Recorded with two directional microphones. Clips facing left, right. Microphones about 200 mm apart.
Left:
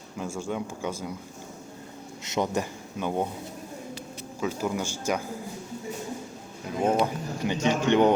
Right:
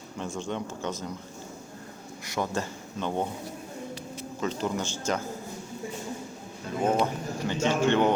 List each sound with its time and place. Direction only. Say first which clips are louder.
0.2 s speech: left 1 dB; 10° left (ahead or behind)
2.2 s speech: left 3 dB; 20° left (ahead or behind)
4.4 s speech: left 1 dB; 10° left (ahead or behind)
6.8 s speech: left 1 dB; 10° left (ahead or behind)